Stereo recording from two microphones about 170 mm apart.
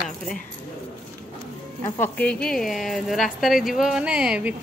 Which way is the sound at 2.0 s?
10° left (ahead or behind).